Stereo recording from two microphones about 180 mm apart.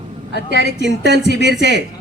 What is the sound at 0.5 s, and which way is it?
Speech, 70° right (ahead or behind).